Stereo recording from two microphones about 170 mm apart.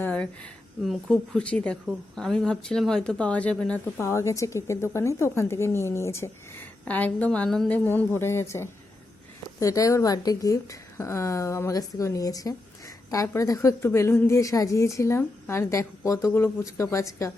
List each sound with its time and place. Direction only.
0.0 s a woman's voice: 10° left (ahead or behind)